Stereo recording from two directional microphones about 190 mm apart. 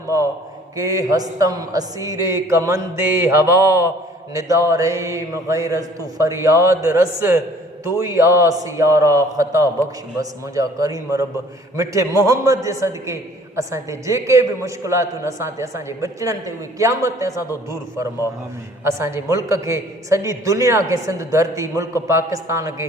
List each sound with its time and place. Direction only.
0.8 s a woman's voice: 20° right (ahead or behind)